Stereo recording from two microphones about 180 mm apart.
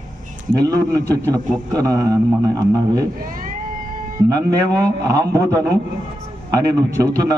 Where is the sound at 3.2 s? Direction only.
50° right (ahead or behind).